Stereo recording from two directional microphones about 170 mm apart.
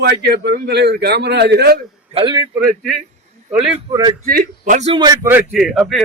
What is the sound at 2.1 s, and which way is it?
Speech, 25° right (ahead or behind).